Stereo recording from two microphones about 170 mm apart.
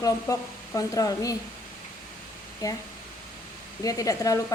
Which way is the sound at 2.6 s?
20° left (ahead or behind).